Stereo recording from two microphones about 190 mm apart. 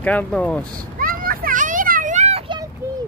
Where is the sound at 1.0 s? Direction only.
50° right (ahead or behind).